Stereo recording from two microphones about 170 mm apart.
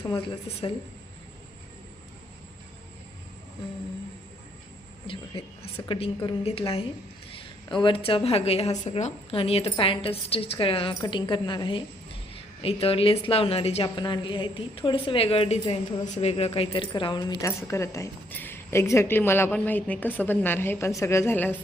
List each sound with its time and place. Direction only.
0.0 s a woman's voice: 30° left (ahead or behind)
5.0 s a woman's voice: 30° left (ahead or behind); by 21.6 s 10° left (ahead or behind)